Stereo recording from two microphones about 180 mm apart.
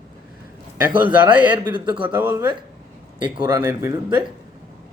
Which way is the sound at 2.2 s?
10° right (ahead or behind).